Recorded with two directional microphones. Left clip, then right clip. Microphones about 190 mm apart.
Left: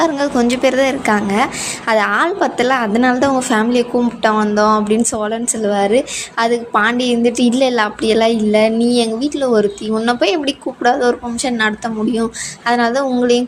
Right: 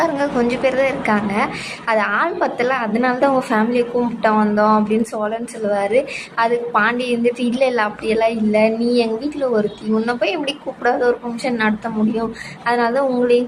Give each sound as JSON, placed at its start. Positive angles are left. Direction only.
{"t": 0.0, "sound": "a woman's voice", "side_deg": 45}